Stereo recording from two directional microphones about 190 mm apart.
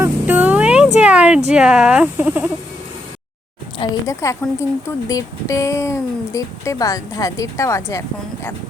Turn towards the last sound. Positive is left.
turn(degrees=15)  # may be behind; listen again after turning